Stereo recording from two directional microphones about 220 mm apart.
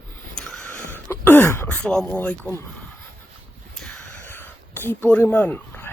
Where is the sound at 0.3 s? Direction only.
5° left (ahead or behind).